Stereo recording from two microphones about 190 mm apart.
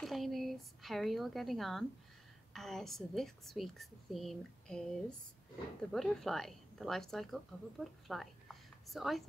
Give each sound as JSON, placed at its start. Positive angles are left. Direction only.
{"t": 0.0, "sound": "a woman's voice", "side_deg": 0}